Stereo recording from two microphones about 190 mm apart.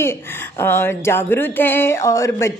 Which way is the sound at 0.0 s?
10° left (ahead or behind).